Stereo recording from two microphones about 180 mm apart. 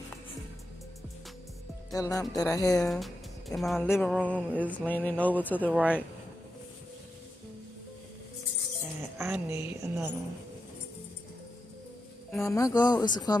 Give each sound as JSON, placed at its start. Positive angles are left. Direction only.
{"t": 1.9, "sound": "speech", "side_deg": 20}
{"t": 2.9, "sound": "speech", "side_deg": 0}
{"t": 3.8, "sound": "speech", "side_deg": 10}
{"t": 4.1, "sound": "a woman's voice", "side_deg": -10}
{"t": 4.6, "sound": "speech", "side_deg": 10}
{"t": 5.8, "sound": "a woman's voice", "side_deg": -5}
{"t": 9.2, "sound": "a woman's voice", "side_deg": -15}
{"t": 12.4, "sound": "speech", "side_deg": 15}